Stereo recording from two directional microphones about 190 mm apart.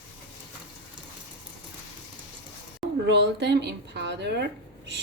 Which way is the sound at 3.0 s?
65° right (ahead or behind).